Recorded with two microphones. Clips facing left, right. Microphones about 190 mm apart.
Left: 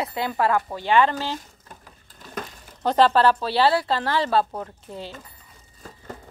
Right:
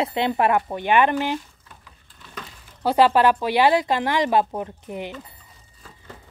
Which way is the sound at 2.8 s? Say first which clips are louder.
Right 1 dB; 10° right (ahead or behind).